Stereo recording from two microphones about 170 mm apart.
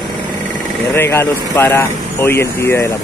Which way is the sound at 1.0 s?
15° left (ahead or behind).